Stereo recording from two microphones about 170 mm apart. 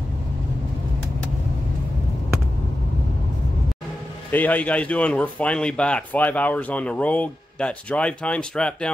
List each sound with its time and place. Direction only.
4.3 s speech: 10° left (ahead or behind)